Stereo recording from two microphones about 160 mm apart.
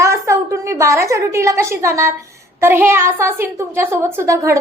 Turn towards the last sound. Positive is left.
turn(degrees=-20)  # may be behind; listen again after turning